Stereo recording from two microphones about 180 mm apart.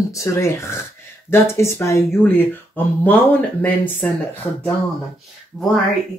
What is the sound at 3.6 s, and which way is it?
Speech, 10° left (ahead or behind).